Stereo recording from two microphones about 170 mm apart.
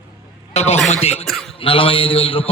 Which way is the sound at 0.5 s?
40° left (ahead or behind).